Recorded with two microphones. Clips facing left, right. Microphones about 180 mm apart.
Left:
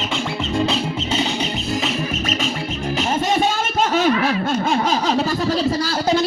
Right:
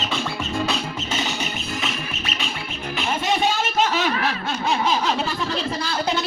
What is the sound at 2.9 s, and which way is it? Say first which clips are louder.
Music: left 3 dB; 45° left (ahead or behind).